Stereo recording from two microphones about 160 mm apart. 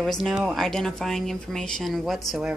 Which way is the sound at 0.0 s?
Centre (ahead or behind).